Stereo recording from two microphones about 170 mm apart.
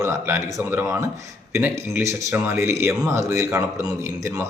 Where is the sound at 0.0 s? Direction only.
20° right (ahead or behind).